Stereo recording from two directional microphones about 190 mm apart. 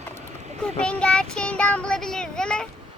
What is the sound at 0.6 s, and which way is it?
Child singing, 5° left (ahead or behind).